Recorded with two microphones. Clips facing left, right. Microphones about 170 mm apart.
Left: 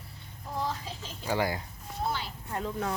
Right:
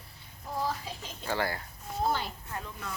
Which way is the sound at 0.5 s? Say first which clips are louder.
Even; 10° right (ahead or behind).